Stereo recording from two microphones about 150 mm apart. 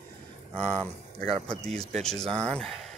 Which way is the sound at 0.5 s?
10° left (ahead or behind).